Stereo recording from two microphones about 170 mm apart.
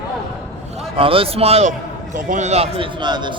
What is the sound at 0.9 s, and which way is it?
A man's voice, 35° right (ahead or behind).